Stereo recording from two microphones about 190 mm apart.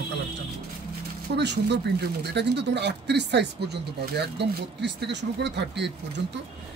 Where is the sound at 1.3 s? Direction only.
65° right (ahead or behind).